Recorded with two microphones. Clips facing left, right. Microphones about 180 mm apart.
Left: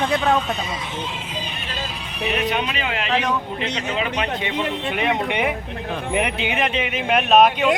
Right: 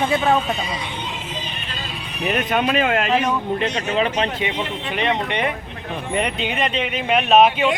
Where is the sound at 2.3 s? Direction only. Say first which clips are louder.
Right 3 dB; 50° right (ahead or behind).